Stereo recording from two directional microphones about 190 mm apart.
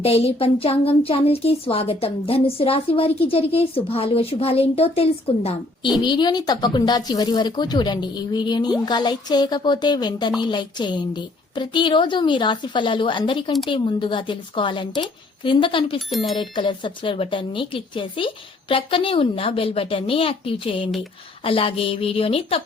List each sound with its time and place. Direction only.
0.0 s speech: 30° left (ahead or behind)